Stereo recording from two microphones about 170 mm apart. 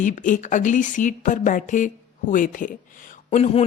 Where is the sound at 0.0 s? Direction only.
50° left (ahead or behind).